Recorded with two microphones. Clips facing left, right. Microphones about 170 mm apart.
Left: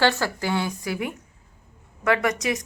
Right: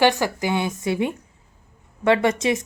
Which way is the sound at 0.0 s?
15° right (ahead or behind).